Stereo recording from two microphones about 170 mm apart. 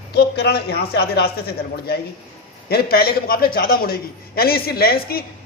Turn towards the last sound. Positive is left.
turn(degrees=65)  # may be behind; listen again after turning